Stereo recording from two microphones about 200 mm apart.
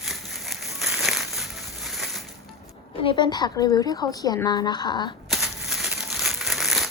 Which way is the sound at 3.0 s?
25° left (ahead or behind).